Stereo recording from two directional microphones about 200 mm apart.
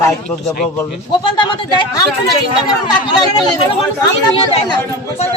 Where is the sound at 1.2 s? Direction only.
20° left (ahead or behind).